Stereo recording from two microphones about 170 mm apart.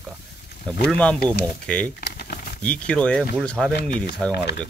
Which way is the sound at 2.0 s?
60° left (ahead or behind).